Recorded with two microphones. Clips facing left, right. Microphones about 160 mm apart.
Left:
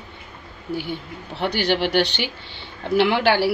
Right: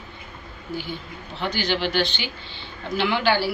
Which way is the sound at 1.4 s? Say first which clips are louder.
Left 4 dB; 65° left (ahead or behind).